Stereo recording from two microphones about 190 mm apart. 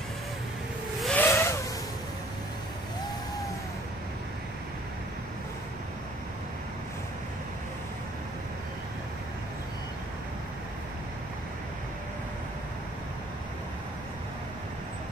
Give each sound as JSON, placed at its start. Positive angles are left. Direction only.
{"t": 1.0, "sound": "vehicle", "side_deg": 10}